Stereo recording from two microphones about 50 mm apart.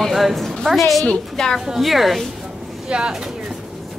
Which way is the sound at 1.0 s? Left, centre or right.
Centre.